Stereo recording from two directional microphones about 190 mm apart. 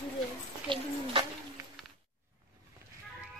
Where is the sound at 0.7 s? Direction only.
25° right (ahead or behind).